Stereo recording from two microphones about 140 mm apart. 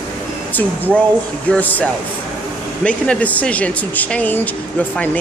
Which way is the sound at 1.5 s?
10° left (ahead or behind).